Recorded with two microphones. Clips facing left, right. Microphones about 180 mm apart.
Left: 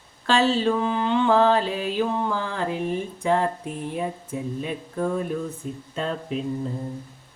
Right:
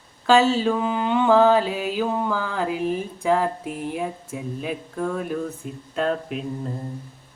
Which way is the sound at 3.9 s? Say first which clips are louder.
Left 1 dB; 5° right (ahead or behind).